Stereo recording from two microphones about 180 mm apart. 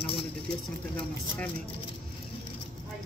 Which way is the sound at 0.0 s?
30° left (ahead or behind).